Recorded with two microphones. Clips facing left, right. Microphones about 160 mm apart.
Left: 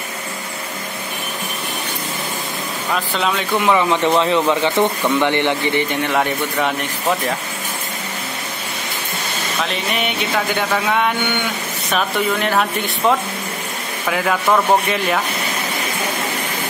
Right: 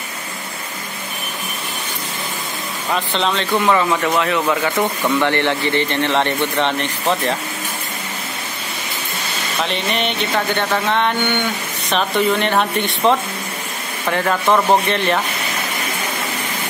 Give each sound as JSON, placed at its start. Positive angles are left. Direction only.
{"t": 2.9, "sound": "a man's voice", "side_deg": 5}
{"t": 3.9, "sound": "a man's voice", "side_deg": 25}
{"t": 9.6, "sound": "speech", "side_deg": 5}